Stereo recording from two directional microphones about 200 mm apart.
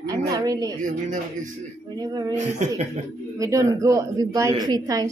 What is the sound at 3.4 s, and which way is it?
A woman's voice, 15° right (ahead or behind).